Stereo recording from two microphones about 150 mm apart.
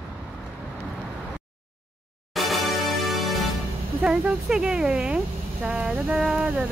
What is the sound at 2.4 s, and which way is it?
Music, centre (ahead or behind).